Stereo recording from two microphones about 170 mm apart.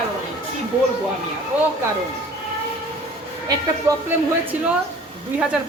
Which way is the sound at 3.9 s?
15° right (ahead or behind).